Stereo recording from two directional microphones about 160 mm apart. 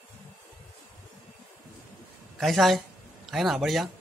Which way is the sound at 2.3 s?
Centre (ahead or behind).